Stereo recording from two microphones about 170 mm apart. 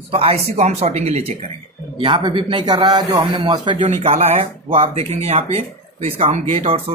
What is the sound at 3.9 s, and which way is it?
Speech, 40° right (ahead or behind).